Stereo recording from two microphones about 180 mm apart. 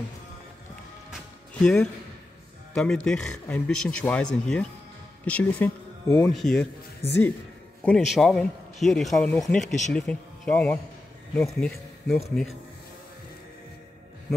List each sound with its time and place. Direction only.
1.5 s speech: 5° left (ahead or behind)
7.0 s speech: 15° left (ahead or behind)
9.6 s speech: 40° left (ahead or behind)
9.9 s speech: 5° left (ahead or behind)